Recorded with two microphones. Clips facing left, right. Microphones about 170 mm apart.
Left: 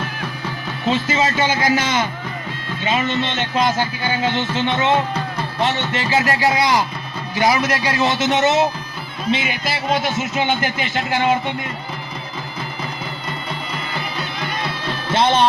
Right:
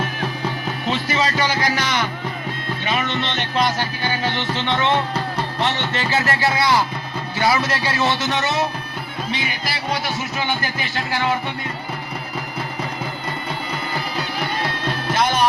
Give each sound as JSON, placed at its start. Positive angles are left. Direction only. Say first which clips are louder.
{"t": 0.9, "sound": "a man's voice", "louder": "left 4 dB", "side_deg": 20}
{"t": 2.8, "sound": "music", "louder": "left 4 dB", "side_deg": 15}
{"t": 9.3, "sound": "a man's voice", "louder": "left 7 dB", "side_deg": 20}
{"t": 15.1, "sound": "music", "louder": "left 4 dB", "side_deg": 25}